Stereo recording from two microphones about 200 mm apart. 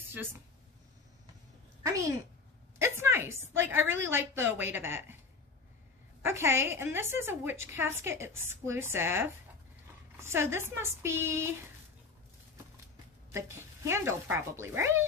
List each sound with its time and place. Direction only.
1.8 s a sound: 15° right (ahead or behind)
2.8 s a woman's voice: 10° right (ahead or behind)
6.2 s a woman's voice: 10° right (ahead or behind)
13.3 s a woman's voice: 15° right (ahead or behind)